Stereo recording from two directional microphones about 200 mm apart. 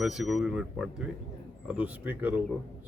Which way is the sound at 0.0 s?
Centre (ahead or behind).